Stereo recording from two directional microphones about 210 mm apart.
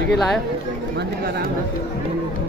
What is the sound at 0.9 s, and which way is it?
Speech, 50° right (ahead or behind).